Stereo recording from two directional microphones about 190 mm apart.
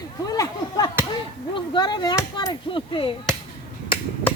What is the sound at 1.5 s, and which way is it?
Chop, 25° left (ahead or behind).